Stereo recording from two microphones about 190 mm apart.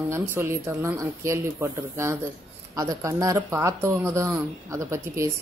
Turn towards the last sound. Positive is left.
turn(degrees=-15)  # may be behind; listen again after turning